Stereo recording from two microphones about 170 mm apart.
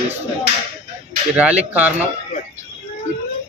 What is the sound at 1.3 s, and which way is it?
Speech, 10° right (ahead or behind).